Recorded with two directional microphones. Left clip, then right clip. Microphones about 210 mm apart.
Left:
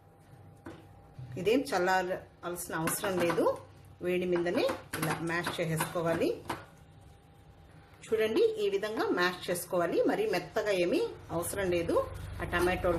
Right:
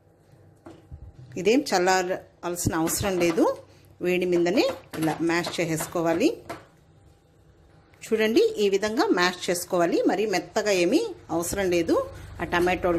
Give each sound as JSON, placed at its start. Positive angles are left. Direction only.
{"t": 1.4, "sound": "a woman's voice", "side_deg": -35}
{"t": 8.1, "sound": "a woman's voice", "side_deg": -35}